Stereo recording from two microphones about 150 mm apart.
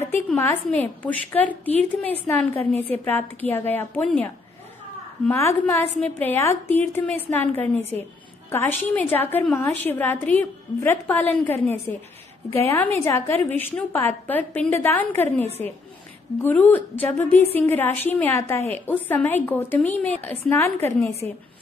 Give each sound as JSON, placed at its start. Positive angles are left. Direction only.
{"t": 0.4, "sound": "a woman's voice", "side_deg": 10}
{"t": 5.3, "sound": "a woman's voice", "side_deg": 15}
{"t": 16.4, "sound": "a woman's voice", "side_deg": 10}